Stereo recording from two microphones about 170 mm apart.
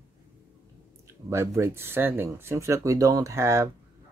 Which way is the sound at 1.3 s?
15° right (ahead or behind).